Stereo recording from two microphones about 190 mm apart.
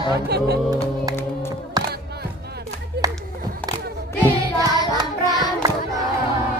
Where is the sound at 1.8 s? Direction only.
20° right (ahead or behind).